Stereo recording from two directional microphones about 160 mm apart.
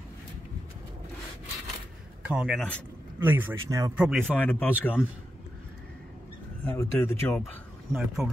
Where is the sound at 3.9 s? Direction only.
5° right (ahead or behind).